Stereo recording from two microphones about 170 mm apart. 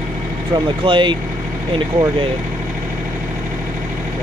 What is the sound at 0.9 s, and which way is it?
Speech, 30° right (ahead or behind).